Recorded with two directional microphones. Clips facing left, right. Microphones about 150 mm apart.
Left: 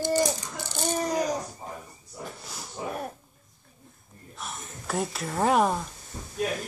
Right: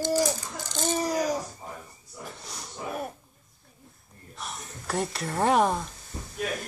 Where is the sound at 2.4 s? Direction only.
5° left (ahead or behind).